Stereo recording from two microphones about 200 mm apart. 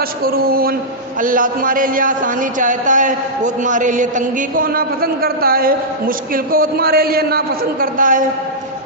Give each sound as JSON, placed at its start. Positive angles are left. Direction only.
{"t": 0.3, "sound": "a man's voice", "side_deg": -50}